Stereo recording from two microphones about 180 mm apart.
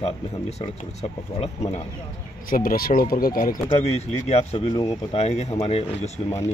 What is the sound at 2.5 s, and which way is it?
Speech, 55° left (ahead or behind).